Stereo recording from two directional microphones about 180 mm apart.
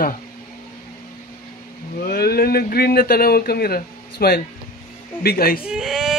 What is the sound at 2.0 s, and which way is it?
Speech, 60° left (ahead or behind).